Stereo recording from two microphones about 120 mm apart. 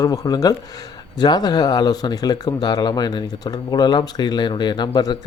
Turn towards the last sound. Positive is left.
turn(degrees=35)  # may be behind; listen again after turning